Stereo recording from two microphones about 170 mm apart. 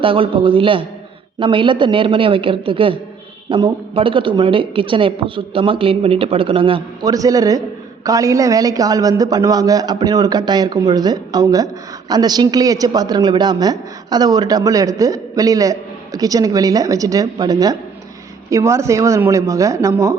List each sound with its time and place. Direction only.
0.0 s a woman's voice: 30° right (ahead or behind)